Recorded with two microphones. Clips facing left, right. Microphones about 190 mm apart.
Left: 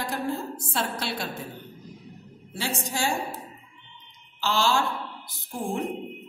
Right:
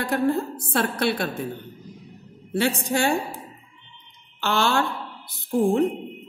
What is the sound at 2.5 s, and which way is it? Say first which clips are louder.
Speech: right 8 dB; 60° right (ahead or behind).